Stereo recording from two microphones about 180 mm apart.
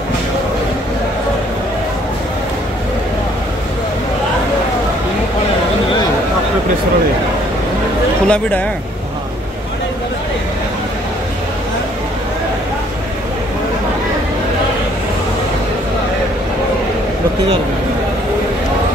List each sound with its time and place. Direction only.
8.3 s speech: 10° left (ahead or behind)